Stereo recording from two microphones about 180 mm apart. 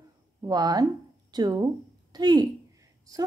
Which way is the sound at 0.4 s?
20° right (ahead or behind).